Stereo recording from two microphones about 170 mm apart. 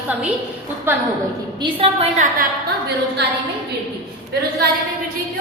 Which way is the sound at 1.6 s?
35° right (ahead or behind).